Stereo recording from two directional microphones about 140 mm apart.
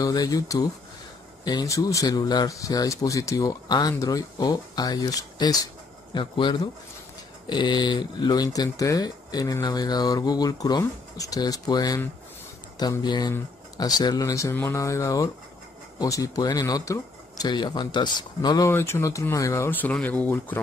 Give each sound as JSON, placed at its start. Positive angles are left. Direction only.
{"t": 0.0, "sound": "speech", "side_deg": 25}
{"t": 18.7, "sound": "speech", "side_deg": 15}